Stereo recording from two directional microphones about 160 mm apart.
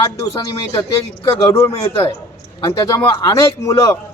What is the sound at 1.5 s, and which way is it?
Speech, 20° left (ahead or behind).